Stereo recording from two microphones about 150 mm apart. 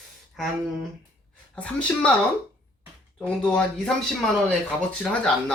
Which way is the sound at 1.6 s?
10° left (ahead or behind).